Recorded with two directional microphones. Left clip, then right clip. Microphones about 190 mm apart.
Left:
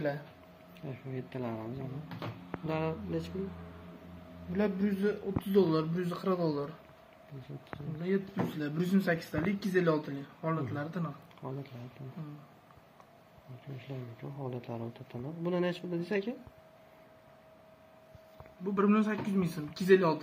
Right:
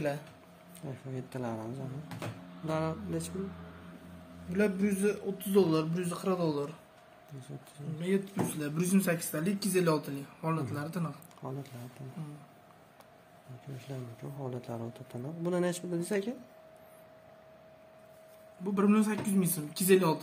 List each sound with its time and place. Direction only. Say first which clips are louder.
0.8 s speech: even; 15° right (ahead or behind)
4.5 s a man's voice: right 2 dB; 25° right (ahead or behind)
5.0 s speech: even; 10° right (ahead or behind)
8.0 s speech: right 1 dB; 30° right (ahead or behind)
11.4 s speech: even; 15° right (ahead or behind)
14.4 s speech: right 1 dB; 15° right (ahead or behind)
18.8 s speech: even; 50° right (ahead or behind)